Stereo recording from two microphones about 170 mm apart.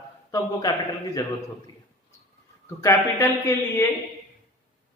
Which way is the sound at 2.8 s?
15° left (ahead or behind).